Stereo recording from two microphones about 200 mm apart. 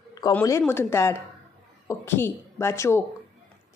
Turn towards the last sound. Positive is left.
turn(degrees=15)  # may be behind; listen again after turning